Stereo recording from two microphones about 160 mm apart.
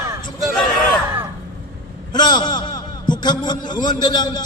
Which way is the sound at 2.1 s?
25° left (ahead or behind).